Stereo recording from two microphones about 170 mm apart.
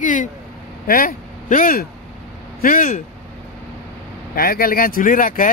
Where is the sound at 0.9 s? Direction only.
55° left (ahead or behind).